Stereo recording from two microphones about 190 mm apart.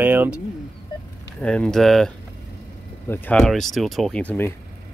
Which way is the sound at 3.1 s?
5° left (ahead or behind).